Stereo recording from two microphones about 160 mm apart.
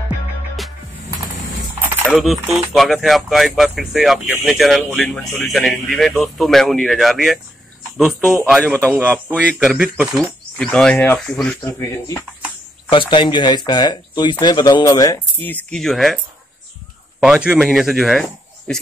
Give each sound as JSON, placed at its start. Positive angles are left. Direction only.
{"t": 2.0, "sound": "speech", "side_deg": 0}
{"t": 8.9, "sound": "speech", "side_deg": -10}
{"t": 11.6, "sound": "speech", "side_deg": 20}
{"t": 12.9, "sound": "speech", "side_deg": 30}
{"t": 17.2, "sound": "speech", "side_deg": -5}